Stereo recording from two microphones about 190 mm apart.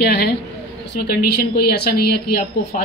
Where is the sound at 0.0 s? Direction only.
60° left (ahead or behind).